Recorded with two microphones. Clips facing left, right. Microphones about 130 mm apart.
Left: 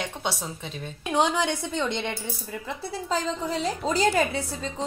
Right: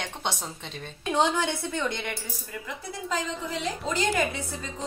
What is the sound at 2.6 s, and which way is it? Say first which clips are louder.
A woman's voice: left 4 dB; 35° left (ahead or behind).